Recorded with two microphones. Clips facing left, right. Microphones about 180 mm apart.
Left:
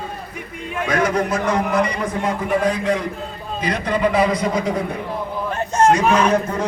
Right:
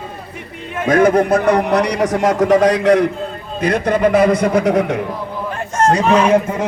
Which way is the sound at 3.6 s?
45° right (ahead or behind).